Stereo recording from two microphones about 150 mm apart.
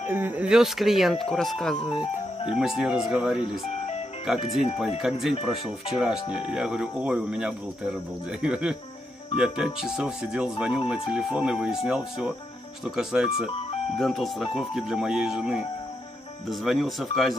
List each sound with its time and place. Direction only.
0.1 s speech: 10° right (ahead or behind)
3.4 s speech: 40° left (ahead or behind)
4.3 s speech: centre (ahead or behind)
9.8 s speech: 5° right (ahead or behind)